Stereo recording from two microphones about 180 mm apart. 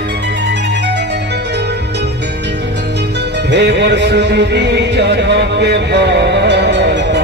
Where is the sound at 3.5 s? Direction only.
70° right (ahead or behind).